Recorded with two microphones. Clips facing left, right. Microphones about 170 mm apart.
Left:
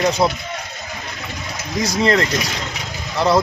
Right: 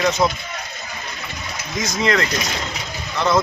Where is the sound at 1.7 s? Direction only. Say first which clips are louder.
Left 3 dB; 35° left (ahead or behind).